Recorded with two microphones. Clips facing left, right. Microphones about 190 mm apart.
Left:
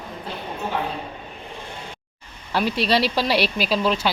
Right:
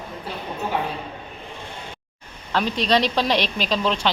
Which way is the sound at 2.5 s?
10° left (ahead or behind).